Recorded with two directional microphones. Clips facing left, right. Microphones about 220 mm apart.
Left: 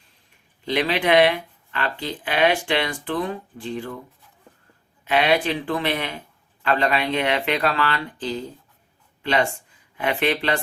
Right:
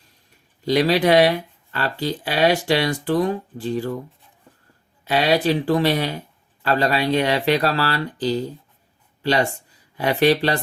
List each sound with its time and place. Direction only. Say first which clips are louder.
0.6 s a man's voice: right 5 dB; 40° right (ahead or behind)
5.0 s a man's voice: right 2 dB; 35° right (ahead or behind)